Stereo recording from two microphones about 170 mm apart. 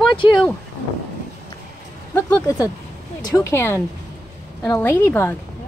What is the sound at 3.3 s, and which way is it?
A woman's voice, 15° left (ahead or behind).